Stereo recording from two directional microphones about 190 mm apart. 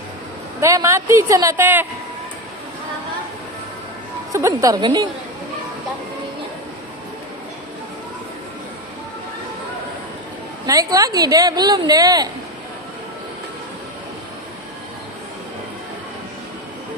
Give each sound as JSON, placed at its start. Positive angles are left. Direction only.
{"t": 0.6, "sound": "a woman's voice", "side_deg": -15}
{"t": 4.3, "sound": "a woman's voice", "side_deg": -15}
{"t": 10.7, "sound": "a woman's voice", "side_deg": -20}